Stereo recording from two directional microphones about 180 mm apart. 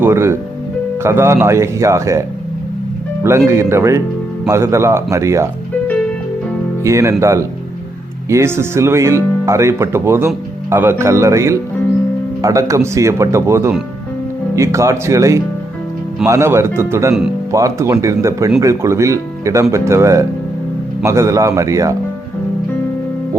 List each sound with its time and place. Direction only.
0.0 s speech: 15° right (ahead or behind)
3.2 s speech: 15° right (ahead or behind)
6.8 s speech: 15° right (ahead or behind)